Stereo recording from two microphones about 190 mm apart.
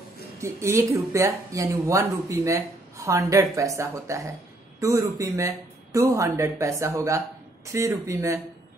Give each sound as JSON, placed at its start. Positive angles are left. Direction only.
{"t": 0.4, "sound": "speech", "side_deg": -15}